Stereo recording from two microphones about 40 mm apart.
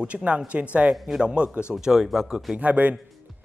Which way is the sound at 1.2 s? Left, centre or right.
Right.